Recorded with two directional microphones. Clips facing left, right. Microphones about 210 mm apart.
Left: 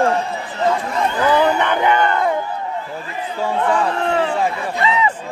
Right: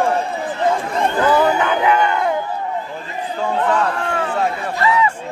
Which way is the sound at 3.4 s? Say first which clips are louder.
Even; 5° left (ahead or behind).